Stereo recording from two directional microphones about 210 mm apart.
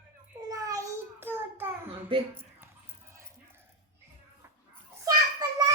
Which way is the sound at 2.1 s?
25° right (ahead or behind).